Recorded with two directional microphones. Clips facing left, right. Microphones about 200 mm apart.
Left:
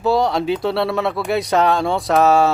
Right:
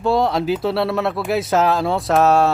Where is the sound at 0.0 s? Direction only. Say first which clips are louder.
Even; centre (ahead or behind).